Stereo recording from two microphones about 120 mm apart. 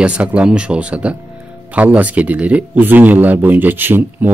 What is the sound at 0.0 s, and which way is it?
Speech, 10° right (ahead or behind).